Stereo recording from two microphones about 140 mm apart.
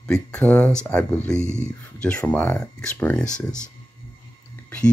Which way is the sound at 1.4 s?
20° right (ahead or behind).